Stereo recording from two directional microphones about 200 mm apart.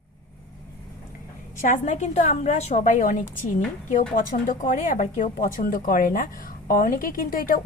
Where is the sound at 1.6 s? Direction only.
35° left (ahead or behind).